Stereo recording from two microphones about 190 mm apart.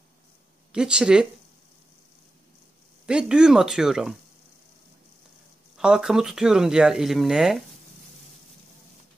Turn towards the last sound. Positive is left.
turn(degrees=0)  # may be behind; listen again after turning